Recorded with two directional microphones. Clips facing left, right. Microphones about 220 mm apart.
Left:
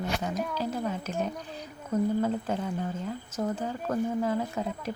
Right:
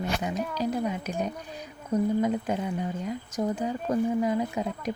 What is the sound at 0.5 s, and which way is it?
Speech, 15° right (ahead or behind).